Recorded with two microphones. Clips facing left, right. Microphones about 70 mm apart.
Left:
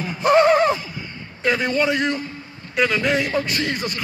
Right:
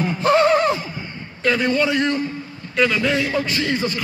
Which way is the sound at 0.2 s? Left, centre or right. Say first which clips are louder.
Left 1 dB; left.